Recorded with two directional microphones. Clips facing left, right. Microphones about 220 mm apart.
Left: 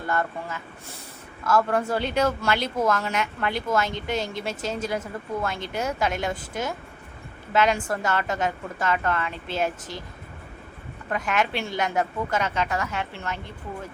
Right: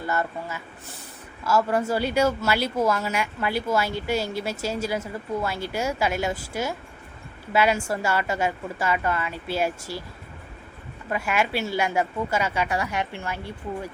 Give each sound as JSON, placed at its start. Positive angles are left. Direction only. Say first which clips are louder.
{"t": 0.0, "sound": "speech", "louder": "even", "side_deg": -5}
{"t": 11.1, "sound": "speech", "louder": "right 1 dB", "side_deg": -10}